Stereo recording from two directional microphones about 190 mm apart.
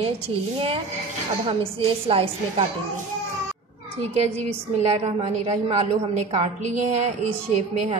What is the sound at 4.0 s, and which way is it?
A woman's voice, 35° right (ahead or behind).